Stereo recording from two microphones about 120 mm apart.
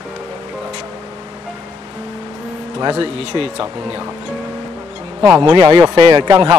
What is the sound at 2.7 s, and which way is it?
Speech, 45° right (ahead or behind).